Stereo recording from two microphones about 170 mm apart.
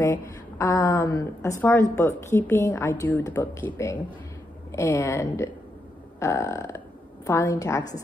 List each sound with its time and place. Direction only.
0.0 s a woman's voice: 15° left (ahead or behind)